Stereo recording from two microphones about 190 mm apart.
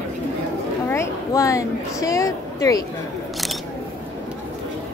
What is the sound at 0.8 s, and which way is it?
Speech, 15° left (ahead or behind).